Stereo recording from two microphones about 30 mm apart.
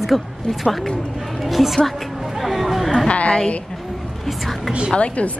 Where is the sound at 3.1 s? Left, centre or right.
Left.